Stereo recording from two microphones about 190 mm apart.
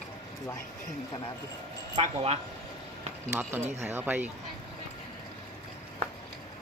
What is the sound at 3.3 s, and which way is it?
Speech, 10° right (ahead or behind).